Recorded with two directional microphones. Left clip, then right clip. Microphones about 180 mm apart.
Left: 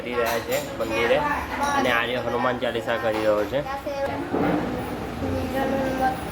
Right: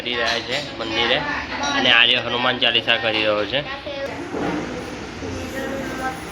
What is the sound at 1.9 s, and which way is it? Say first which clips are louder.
A man's voice: right 8 dB; 10° left (ahead or behind).